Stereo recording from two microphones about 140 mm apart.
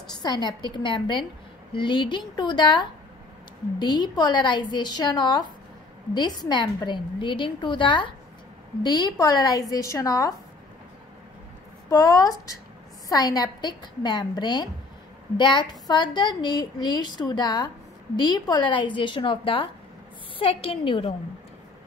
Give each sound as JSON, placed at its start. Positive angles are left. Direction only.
{"t": 0.1, "sound": "a woman's voice", "side_deg": 30}
{"t": 11.9, "sound": "a woman's voice", "side_deg": 25}